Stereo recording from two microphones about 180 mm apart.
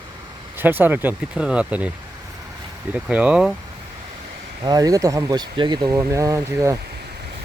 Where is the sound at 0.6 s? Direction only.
10° right (ahead or behind).